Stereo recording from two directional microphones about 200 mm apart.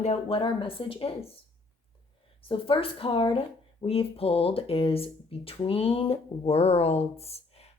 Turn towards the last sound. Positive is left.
turn(degrees=30)  # may be behind; listen again after turning